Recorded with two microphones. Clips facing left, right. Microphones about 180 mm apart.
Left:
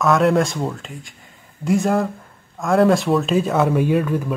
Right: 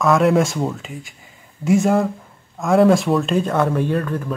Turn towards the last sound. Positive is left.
turn(degrees=5)  # may be behind; listen again after turning